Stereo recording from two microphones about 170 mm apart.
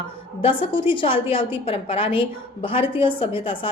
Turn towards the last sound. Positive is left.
turn(degrees=30)  # may be behind; listen again after turning